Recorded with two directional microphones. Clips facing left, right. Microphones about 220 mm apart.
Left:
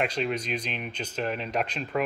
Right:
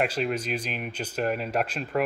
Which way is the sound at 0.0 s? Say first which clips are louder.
Right 1 dB; 5° right (ahead or behind).